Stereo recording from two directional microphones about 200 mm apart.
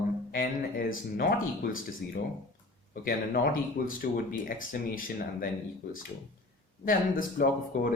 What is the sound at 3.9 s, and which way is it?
Speech, 45° left (ahead or behind).